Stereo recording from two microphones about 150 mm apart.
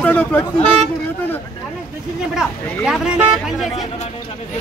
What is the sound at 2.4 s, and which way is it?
Speech, 5° right (ahead or behind).